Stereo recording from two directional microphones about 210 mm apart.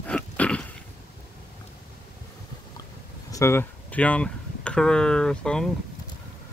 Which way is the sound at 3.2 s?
15° left (ahead or behind).